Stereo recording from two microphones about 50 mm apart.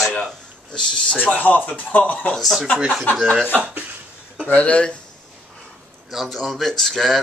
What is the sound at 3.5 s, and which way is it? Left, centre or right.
Speech, right.